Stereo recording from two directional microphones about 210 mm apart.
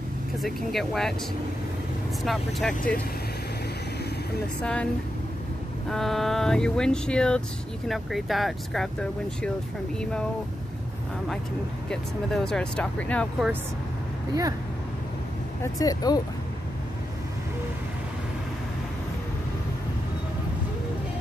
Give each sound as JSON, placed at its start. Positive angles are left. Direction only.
{"t": 0.4, "sound": "speech", "side_deg": 0}
{"t": 2.2, "sound": "speech", "side_deg": 0}
{"t": 4.6, "sound": "speech", "side_deg": 5}
{"t": 5.9, "sound": "speech", "side_deg": 0}
{"t": 11.9, "sound": "speech", "side_deg": 5}
{"t": 15.6, "sound": "speech", "side_deg": 15}